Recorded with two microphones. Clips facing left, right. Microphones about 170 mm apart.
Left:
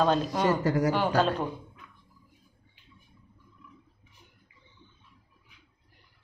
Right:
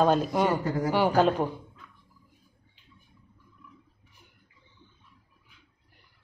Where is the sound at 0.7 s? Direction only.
80° left.